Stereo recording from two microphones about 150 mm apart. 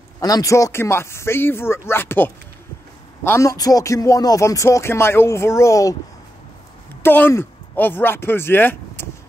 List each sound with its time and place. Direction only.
0.2 s speech: 25° left (ahead or behind)
7.0 s speech: 15° left (ahead or behind)